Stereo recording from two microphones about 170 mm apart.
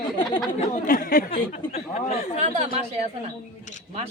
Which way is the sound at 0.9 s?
60° left (ahead or behind).